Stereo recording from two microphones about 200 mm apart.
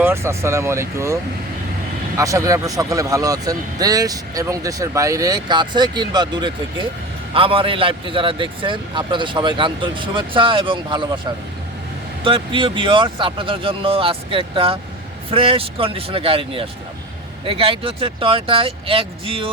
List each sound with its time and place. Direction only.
0.0 s a man's voice: 15° right (ahead or behind)
12.2 s a man's voice: 25° right (ahead or behind)